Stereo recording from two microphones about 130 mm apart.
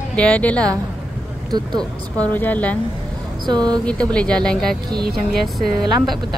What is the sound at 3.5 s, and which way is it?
Speech, 30° right (ahead or behind).